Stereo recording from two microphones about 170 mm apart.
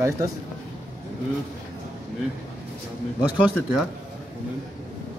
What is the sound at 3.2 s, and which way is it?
Speech, 5° right (ahead or behind).